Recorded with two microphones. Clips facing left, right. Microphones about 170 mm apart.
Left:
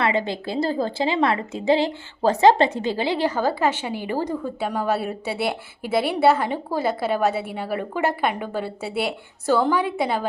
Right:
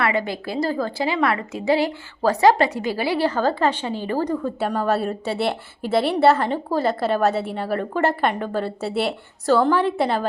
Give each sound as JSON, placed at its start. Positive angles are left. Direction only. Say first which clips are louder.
{"t": 0.0, "sound": "a woman's voice", "louder": "even", "side_deg": 25}
{"t": 4.4, "sound": "a woman's voice", "louder": "right 2 dB", "side_deg": 5}